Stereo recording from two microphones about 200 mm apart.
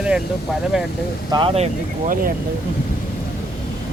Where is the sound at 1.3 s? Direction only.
25° right (ahead or behind).